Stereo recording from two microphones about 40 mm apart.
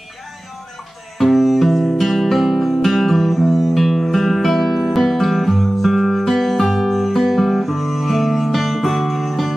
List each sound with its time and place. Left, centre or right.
1.1 s music: centre